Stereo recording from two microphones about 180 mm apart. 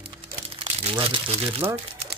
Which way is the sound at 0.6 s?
30° right (ahead or behind).